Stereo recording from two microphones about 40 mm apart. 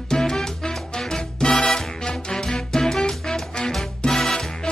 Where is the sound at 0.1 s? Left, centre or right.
Centre.